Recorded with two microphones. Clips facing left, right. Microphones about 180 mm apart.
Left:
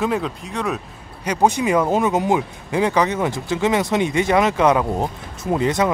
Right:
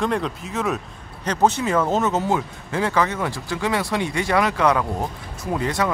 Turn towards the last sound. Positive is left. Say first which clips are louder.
# left 4 dB
turn(degrees=20)  # may be behind; listen again after turning